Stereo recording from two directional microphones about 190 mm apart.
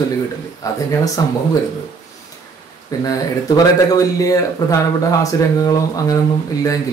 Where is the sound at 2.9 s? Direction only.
20° left (ahead or behind).